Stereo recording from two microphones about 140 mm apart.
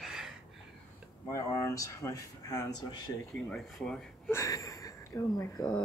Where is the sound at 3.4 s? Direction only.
5° left (ahead or behind).